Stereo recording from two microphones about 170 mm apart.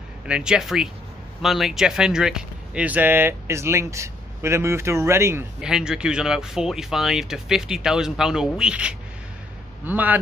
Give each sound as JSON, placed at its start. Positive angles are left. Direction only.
{"t": 0.3, "sound": "speech", "side_deg": -5}
{"t": 5.6, "sound": "speech", "side_deg": -5}